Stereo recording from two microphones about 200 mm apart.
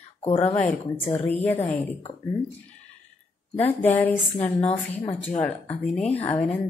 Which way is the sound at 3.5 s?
10° left (ahead or behind).